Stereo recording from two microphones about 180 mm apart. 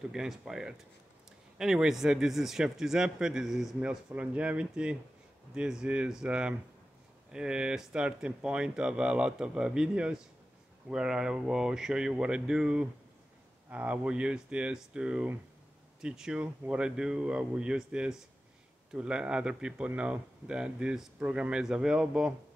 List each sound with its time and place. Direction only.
0.1 s speech: 5° right (ahead or behind)